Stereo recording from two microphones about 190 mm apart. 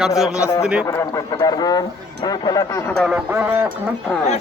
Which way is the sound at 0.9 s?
15° left (ahead or behind).